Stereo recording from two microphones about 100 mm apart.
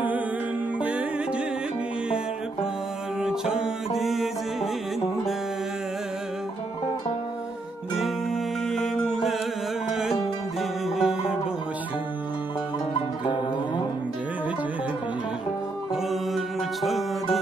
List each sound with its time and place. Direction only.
3.2 s music: 5° right (ahead or behind)
8.6 s music: 5° left (ahead or behind)
13.2 s music: 50° left (ahead or behind)
15.9 s music: centre (ahead or behind)